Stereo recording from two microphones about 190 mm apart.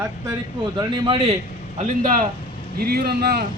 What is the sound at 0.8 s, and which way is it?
Speech, 25° right (ahead or behind).